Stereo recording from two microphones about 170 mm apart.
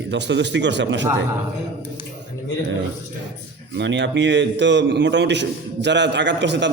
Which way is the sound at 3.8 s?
90° right.